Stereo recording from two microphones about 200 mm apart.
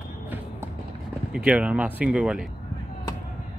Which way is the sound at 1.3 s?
5° right (ahead or behind).